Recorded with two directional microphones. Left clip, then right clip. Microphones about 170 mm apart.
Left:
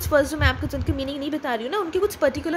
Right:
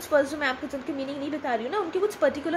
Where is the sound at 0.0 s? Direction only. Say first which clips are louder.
Left 3 dB; 35° left (ahead or behind).